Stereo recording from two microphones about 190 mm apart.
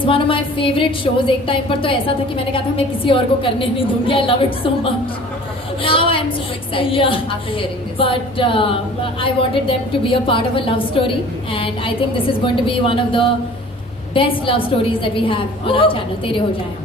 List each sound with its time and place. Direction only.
0.0 s a woman's voice: 30° left (ahead or behind)
5.8 s a sound: 30° left (ahead or behind)
6.7 s a woman's voice: 30° left (ahead or behind)